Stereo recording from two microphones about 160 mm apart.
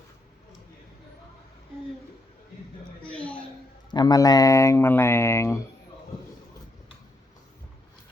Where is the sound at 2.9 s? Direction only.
10° left (ahead or behind).